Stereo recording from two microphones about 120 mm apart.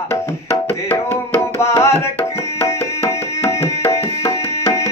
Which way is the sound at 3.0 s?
25° left (ahead or behind).